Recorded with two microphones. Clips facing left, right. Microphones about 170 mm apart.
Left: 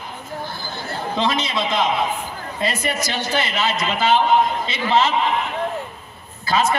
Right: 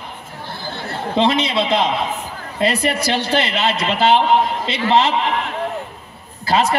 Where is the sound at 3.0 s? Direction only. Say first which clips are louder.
Right 5 dB; 30° right (ahead or behind).